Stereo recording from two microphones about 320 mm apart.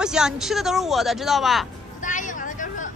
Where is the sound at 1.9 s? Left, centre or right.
Left.